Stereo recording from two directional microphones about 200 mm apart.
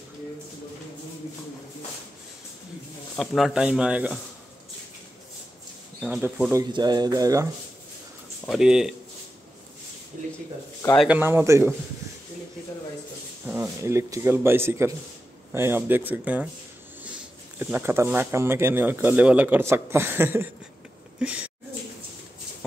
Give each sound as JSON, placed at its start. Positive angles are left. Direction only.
{"t": 3.2, "sound": "speech", "side_deg": 0}
{"t": 5.9, "sound": "speech", "side_deg": 0}
{"t": 6.6, "sound": "speech", "side_deg": -20}
{"t": 8.5, "sound": "speech", "side_deg": -5}
{"t": 11.0, "sound": "speech", "side_deg": -10}
{"t": 13.5, "sound": "speech", "side_deg": -10}
{"t": 17.6, "sound": "speech", "side_deg": -10}